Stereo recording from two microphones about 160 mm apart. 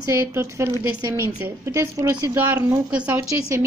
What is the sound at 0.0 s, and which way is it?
A woman's voice, 15° right (ahead or behind).